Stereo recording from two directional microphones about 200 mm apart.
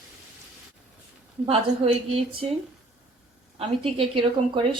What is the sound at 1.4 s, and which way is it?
Speech, 30° right (ahead or behind).